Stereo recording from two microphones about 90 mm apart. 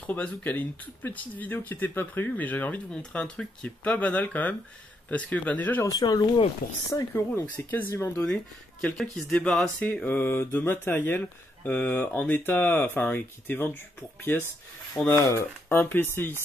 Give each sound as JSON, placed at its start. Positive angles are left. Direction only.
{"t": 0.0, "sound": "speech", "side_deg": 20}
{"t": 5.9, "sound": "speech", "side_deg": 50}
{"t": 6.9, "sound": "speech", "side_deg": 35}
{"t": 7.7, "sound": "speech", "side_deg": 20}
{"t": 8.8, "sound": "speech", "side_deg": 5}